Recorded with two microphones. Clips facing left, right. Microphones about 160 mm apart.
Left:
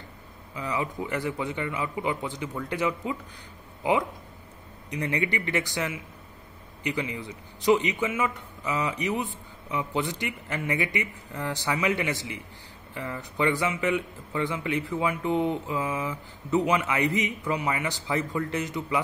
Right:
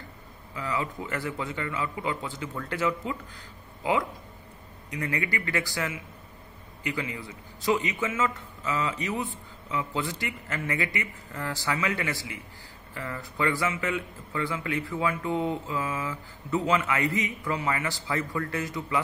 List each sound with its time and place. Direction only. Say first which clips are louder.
0.6 s a man's voice: left 1 dB; 20° left (ahead or behind)